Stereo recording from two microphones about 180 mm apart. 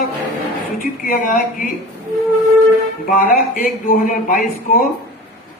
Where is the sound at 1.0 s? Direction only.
50° left (ahead or behind).